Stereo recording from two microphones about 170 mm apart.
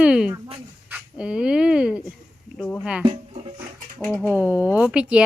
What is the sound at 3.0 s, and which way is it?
Speech, 35° right (ahead or behind).